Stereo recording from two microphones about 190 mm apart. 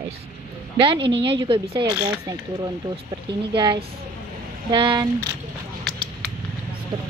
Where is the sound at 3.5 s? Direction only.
25° right (ahead or behind).